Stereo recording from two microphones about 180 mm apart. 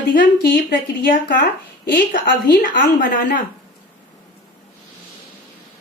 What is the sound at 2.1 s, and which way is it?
A woman's voice, 50° left (ahead or behind).